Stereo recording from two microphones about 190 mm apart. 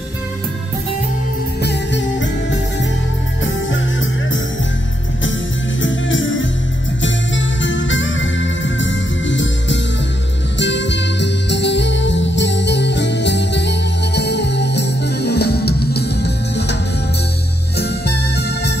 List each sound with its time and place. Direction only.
1.6 s music: 65° left (ahead or behind)
3.7 s music: 90° left
5.8 s music: 85° left; by 16.7 s 60° left (ahead or behind)
17.7 s music: 60° left (ahead or behind)